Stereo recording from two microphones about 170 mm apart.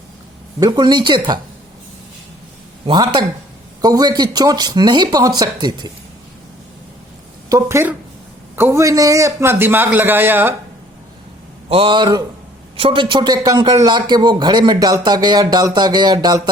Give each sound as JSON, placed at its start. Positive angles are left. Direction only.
{"t": 0.6, "sound": "a man's voice", "side_deg": -25}
{"t": 2.8, "sound": "a man's voice", "side_deg": -25}
{"t": 7.5, "sound": "a man's voice", "side_deg": -15}
{"t": 11.7, "sound": "a man's voice", "side_deg": -30}